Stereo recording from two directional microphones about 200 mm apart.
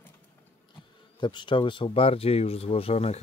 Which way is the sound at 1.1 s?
25° left (ahead or behind).